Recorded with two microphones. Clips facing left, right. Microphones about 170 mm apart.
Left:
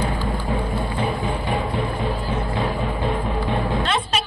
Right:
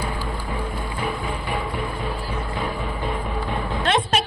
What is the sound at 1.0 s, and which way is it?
Music, 30° left (ahead or behind).